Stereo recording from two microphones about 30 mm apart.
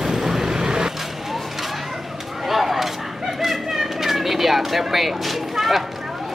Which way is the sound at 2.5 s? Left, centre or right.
Centre.